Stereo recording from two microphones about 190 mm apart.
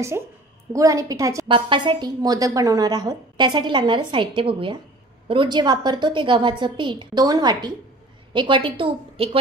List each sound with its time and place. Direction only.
0.7 s a woman's voice: 15° right (ahead or behind)